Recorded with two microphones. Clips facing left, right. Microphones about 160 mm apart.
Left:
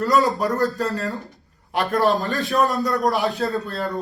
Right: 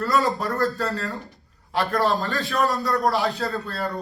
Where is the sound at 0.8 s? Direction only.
20° left (ahead or behind).